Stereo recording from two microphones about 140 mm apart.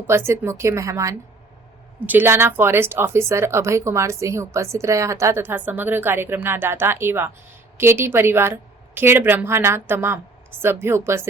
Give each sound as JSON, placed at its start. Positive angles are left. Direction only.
{"t": 0.1, "sound": "speech", "side_deg": -20}